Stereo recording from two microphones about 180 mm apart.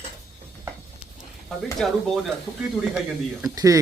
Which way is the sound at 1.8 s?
5° left (ahead or behind).